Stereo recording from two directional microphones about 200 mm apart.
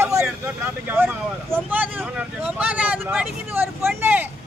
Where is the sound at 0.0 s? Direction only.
15° right (ahead or behind).